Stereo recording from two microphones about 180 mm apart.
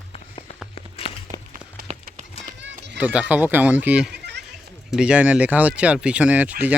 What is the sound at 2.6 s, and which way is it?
Run, 75° right (ahead or behind).